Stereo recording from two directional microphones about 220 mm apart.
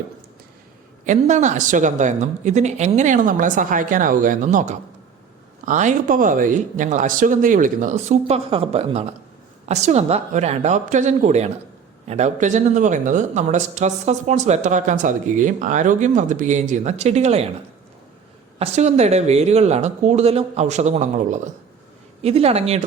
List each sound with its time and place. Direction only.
1.0 s speech: 35° right (ahead or behind)
18.6 s speech: 30° right (ahead or behind)